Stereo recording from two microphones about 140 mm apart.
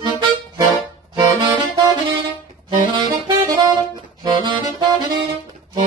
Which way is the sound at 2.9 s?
35° right (ahead or behind).